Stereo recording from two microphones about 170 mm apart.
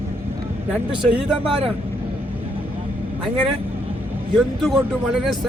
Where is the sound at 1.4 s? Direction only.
35° right (ahead or behind).